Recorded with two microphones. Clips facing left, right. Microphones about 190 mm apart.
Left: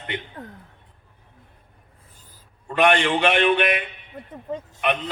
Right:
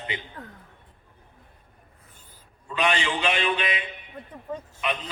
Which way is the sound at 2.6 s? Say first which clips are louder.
Left 7 dB; 60° left (ahead or behind).